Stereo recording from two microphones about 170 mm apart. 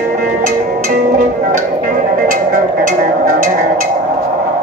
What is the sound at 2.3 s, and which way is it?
Music, 50° right (ahead or behind).